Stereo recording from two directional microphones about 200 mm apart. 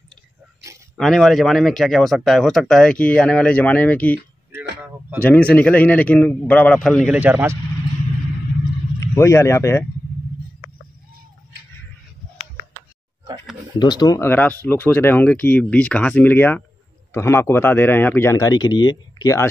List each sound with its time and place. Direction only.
0.9 s a man's voice: centre (ahead or behind)
5.2 s a man's voice: 5° left (ahead or behind)
7.2 s speech: 10° right (ahead or behind)
9.0 s a man's voice: 15° left (ahead or behind)
13.7 s a man's voice: 20° left (ahead or behind)